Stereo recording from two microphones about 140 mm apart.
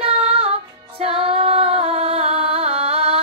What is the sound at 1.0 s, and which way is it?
Music, 45° right (ahead or behind).